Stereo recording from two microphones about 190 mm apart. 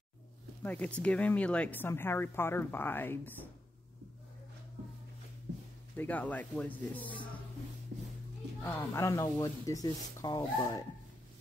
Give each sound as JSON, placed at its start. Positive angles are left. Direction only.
{"t": 0.6, "sound": "speech", "side_deg": 10}
{"t": 5.9, "sound": "speech", "side_deg": 10}
{"t": 8.6, "sound": "speech", "side_deg": 10}